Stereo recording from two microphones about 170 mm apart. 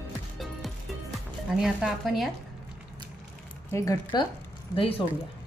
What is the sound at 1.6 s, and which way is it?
Speech, centre (ahead or behind).